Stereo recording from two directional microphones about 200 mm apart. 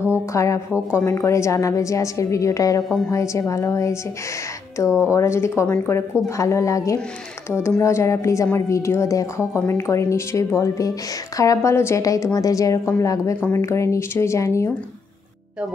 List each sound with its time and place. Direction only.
0.3 s a woman's voice: 15° left (ahead or behind)
5.0 s a woman's voice: 15° left (ahead or behind)